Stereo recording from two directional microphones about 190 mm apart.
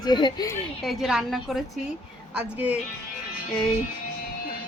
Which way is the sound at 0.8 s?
Centre (ahead or behind).